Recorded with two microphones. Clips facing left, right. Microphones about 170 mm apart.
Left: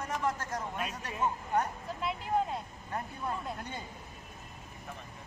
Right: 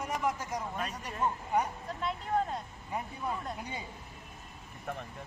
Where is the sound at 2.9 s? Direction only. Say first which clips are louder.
Right 1 dB; 10° right (ahead or behind).